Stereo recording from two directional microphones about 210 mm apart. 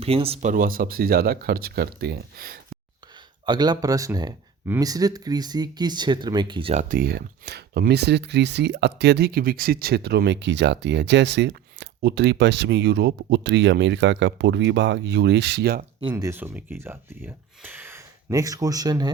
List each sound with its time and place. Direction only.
0.0 s speech: 25° right (ahead or behind)
0.5 s speech: 40° right (ahead or behind)
3.4 s speech: 20° right (ahead or behind)
6.8 s speech: 40° right (ahead or behind)
16.0 s speech: 20° right (ahead or behind)